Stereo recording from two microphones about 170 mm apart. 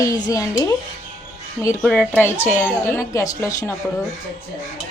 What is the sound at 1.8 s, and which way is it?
A woman's voice, 5° left (ahead or behind).